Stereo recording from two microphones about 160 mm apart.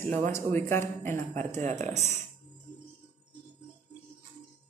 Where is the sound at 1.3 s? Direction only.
45° right (ahead or behind).